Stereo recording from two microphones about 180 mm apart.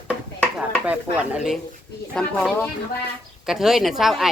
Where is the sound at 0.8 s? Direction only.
5° right (ahead or behind).